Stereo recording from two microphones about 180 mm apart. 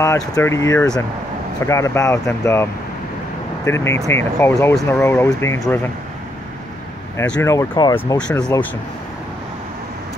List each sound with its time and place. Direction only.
0.0 s speech: 15° left (ahead or behind)
7.2 s speech: 5° left (ahead or behind)
7.4 s speech: 20° left (ahead or behind)
8.5 s speech: 15° left (ahead or behind)